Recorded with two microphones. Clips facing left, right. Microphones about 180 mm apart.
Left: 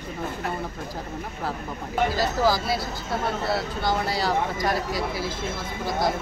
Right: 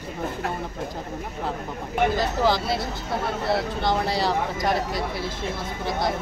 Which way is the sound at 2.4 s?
5° left (ahead or behind).